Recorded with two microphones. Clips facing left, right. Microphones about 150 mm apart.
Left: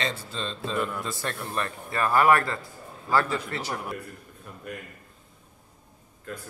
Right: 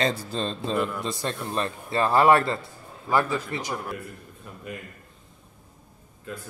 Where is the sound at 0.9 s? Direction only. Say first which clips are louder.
Right 3 dB; 20° right (ahead or behind).